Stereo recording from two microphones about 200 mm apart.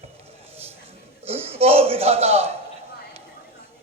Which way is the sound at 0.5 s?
30° right (ahead or behind).